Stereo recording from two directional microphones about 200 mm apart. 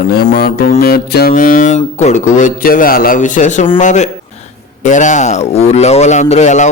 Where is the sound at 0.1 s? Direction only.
55° left (ahead or behind).